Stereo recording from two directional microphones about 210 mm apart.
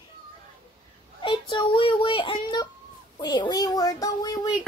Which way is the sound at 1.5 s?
25° left (ahead or behind).